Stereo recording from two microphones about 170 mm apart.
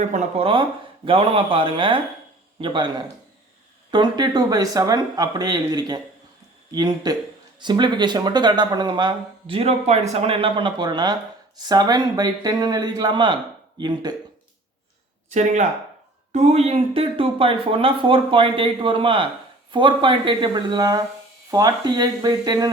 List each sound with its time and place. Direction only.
0.1 s speech: 35° right (ahead or behind)
3.9 s speech: 25° right (ahead or behind)
15.3 s speech: 45° right (ahead or behind); by 22.7 s 20° right (ahead or behind)